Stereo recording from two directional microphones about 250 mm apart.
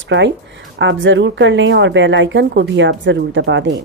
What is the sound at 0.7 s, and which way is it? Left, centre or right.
Speech, right.